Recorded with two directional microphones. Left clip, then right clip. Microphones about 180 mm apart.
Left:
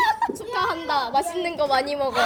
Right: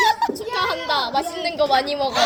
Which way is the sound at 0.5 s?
35° left (ahead or behind).